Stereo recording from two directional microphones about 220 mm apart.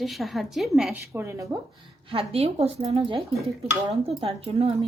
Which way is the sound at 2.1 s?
25° right (ahead or behind).